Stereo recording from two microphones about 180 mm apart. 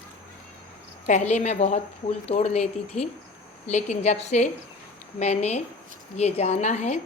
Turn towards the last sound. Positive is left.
turn(degrees=40)  # may be behind; listen again after turning